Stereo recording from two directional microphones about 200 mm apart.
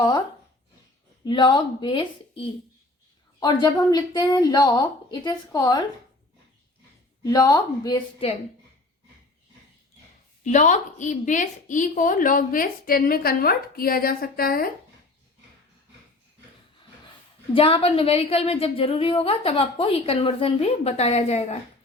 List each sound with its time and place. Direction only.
1.2 s a woman's voice: 20° left (ahead or behind)
7.3 s a woman's voice: 20° left (ahead or behind)
10.4 s a woman's voice: 35° left (ahead or behind)
17.5 s a woman's voice: 25° left (ahead or behind)